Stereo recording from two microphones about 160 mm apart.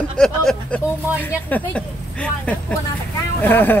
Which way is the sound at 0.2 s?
5° left (ahead or behind).